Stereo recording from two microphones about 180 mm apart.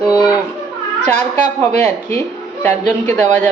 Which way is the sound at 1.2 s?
45° right (ahead or behind).